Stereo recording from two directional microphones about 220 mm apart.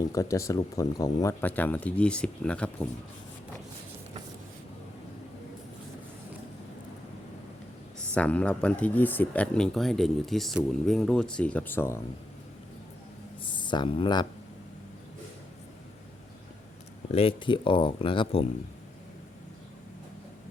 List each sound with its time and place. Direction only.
0.0 s speech: 15° left (ahead or behind)
8.1 s speech: 5° left (ahead or behind)
13.4 s speech: 20° left (ahead or behind)
17.1 s speech: 25° left (ahead or behind)